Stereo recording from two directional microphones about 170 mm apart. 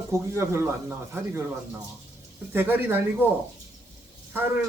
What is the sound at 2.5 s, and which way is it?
Speech, 10° right (ahead or behind).